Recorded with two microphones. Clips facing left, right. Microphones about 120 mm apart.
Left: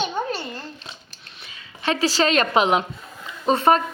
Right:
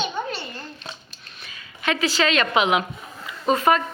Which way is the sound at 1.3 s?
25° left (ahead or behind).